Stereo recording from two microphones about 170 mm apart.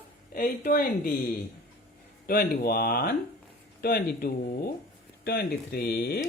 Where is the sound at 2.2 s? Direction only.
60° left (ahead or behind).